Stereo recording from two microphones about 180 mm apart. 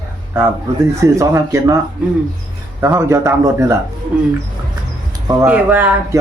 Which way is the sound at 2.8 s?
15° right (ahead or behind).